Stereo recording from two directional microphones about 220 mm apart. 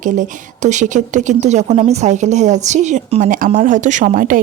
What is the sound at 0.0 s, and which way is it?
Speech, 35° right (ahead or behind).